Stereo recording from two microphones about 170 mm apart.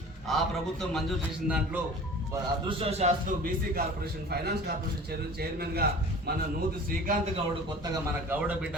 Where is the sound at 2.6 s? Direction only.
35° right (ahead or behind).